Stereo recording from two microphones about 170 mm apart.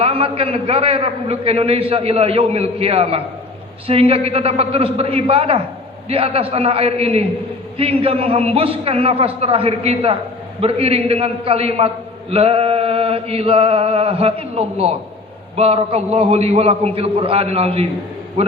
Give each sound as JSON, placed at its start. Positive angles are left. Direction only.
{"t": 0.0, "sound": "a man's voice", "side_deg": -35}